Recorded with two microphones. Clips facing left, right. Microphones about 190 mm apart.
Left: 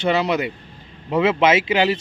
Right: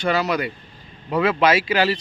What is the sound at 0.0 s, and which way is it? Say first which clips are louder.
Speech: left 2 dB; 25° left (ahead or behind).